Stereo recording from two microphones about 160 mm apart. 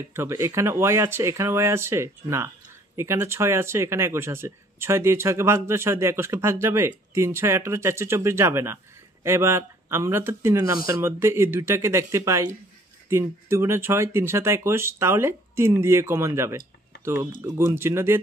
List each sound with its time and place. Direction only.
0.1 s speech: 15° right (ahead or behind)